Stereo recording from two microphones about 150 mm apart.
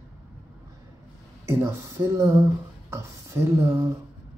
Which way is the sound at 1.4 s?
20° right (ahead or behind).